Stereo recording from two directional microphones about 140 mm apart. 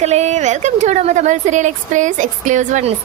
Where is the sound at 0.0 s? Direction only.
50° right (ahead or behind).